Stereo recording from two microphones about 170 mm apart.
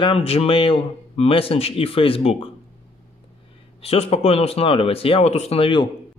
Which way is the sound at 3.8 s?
35° left (ahead or behind).